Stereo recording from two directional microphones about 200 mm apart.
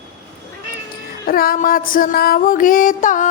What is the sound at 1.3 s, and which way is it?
Music, 50° left (ahead or behind).